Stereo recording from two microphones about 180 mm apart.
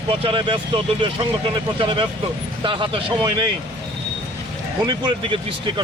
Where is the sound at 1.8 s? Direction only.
25° right (ahead or behind).